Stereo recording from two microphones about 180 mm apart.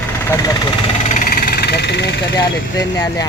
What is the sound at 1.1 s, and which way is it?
Vehicle, 50° left (ahead or behind).